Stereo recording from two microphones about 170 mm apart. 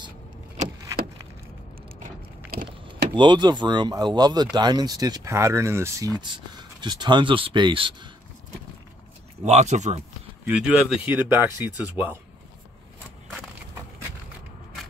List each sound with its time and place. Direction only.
2.5 s a sound: 60° right (ahead or behind)
3.2 s speech: 25° right (ahead or behind)
9.4 s speech: 40° right (ahead or behind)
10.4 s speech: 5° right (ahead or behind)